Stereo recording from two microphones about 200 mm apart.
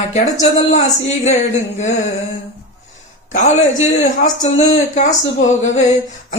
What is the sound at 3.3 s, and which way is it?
Speech, 40° left (ahead or behind).